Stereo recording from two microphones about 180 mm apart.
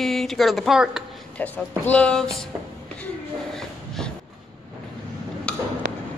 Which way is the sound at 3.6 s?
5° left (ahead or behind).